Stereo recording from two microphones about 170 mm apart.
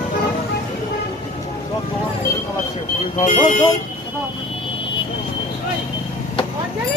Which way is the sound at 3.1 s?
50° left (ahead or behind).